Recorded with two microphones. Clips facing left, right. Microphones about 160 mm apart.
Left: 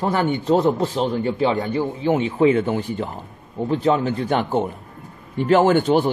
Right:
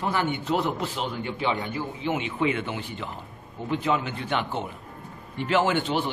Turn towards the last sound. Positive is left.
turn(degrees=45)  # may be behind; listen again after turning